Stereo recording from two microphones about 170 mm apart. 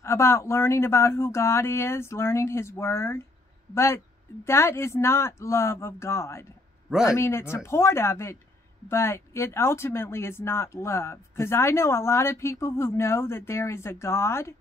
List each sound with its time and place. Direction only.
0.0 s speech: 15° left (ahead or behind)